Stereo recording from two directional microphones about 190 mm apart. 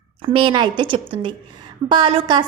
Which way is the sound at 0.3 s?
25° right (ahead or behind).